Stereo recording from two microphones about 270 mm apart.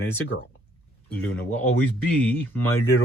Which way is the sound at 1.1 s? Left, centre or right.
Centre.